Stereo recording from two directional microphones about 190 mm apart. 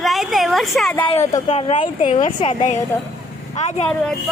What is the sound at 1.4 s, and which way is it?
Speech, 35° left (ahead or behind).